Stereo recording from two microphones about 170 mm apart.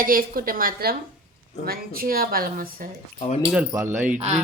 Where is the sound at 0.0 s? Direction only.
60° right (ahead or behind).